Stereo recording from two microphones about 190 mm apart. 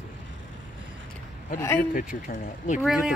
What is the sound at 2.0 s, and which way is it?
Speech, 45° left (ahead or behind).